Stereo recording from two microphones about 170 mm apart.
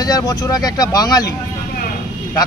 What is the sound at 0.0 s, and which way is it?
Speech, 20° left (ahead or behind).